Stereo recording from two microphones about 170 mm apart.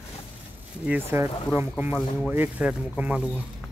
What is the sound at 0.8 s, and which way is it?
Speech, 10° right (ahead or behind).